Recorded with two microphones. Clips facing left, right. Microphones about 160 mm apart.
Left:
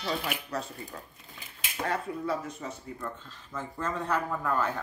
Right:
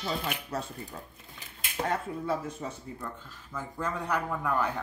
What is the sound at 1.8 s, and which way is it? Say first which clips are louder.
Speech: even; 25° right (ahead or behind).